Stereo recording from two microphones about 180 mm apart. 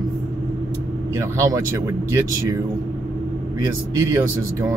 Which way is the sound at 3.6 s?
20° right (ahead or behind).